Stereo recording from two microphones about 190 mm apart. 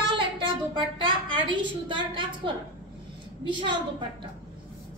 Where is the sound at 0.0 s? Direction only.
25° right (ahead or behind).